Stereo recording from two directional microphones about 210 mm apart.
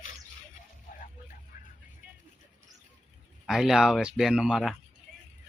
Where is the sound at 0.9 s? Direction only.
35° left (ahead or behind).